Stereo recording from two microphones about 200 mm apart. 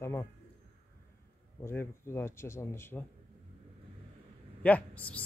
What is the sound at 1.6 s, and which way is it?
Speech, 10° left (ahead or behind).